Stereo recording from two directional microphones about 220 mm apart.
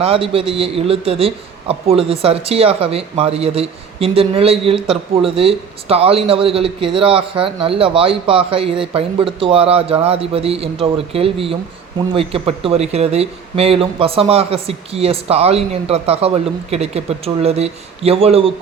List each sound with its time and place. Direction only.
0.0 s a man's voice: 25° right (ahead or behind)